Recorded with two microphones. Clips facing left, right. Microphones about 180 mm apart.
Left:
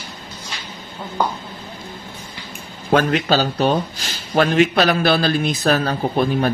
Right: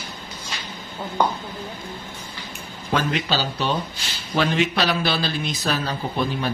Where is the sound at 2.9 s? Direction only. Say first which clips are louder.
Left 7 dB; 55° left (ahead or behind).